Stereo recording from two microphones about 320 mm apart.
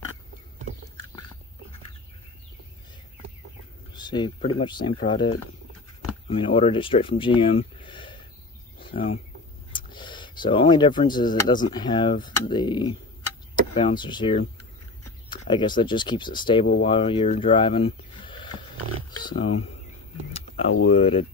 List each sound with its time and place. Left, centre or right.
3.9 s speech: centre
9.7 s a sound: centre
11.4 s speech: centre
20.9 s speech: centre